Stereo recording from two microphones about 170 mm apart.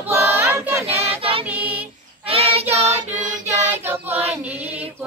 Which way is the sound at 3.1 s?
10° right (ahead or behind).